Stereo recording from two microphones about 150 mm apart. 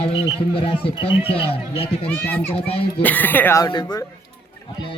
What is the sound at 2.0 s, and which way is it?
Speech, 10° left (ahead or behind).